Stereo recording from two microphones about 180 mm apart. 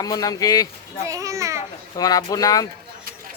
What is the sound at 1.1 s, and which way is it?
Speech, 15° right (ahead or behind).